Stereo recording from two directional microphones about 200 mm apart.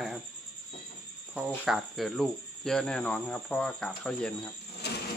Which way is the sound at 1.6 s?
Centre (ahead or behind).